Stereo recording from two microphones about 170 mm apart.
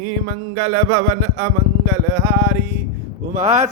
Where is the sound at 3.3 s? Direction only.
40° right (ahead or behind).